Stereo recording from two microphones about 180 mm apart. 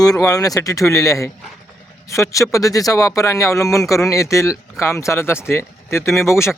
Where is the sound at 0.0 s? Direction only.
20° left (ahead or behind).